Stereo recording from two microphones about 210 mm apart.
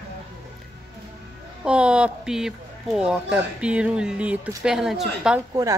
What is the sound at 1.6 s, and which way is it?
Speech, 5° right (ahead or behind).